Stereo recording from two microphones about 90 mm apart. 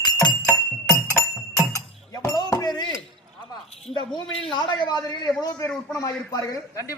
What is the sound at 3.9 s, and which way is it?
A man's voice, 65° left (ahead or behind).